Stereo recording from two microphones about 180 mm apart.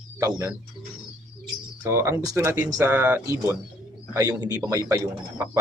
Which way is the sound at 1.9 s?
15° right (ahead or behind).